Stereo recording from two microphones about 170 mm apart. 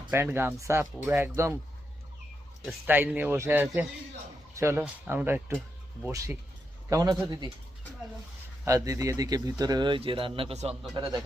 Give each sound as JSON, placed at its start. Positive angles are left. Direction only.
{"t": 0.1, "sound": "speech", "side_deg": -15}
{"t": 2.6, "sound": "speech", "side_deg": -10}
{"t": 8.6, "sound": "speech", "side_deg": -20}
{"t": 10.9, "sound": "speech", "side_deg": -25}